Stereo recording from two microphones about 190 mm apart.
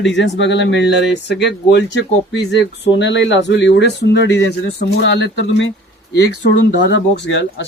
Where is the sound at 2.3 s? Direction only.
65° left (ahead or behind).